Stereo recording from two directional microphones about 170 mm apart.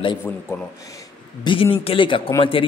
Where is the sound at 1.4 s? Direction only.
30° left (ahead or behind).